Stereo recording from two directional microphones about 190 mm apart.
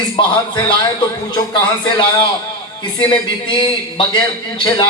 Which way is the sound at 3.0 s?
25° left (ahead or behind).